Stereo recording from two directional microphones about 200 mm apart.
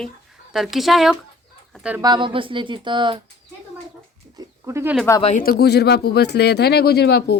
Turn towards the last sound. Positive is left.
turn(degrees=55)  # may be behind; listen again after turning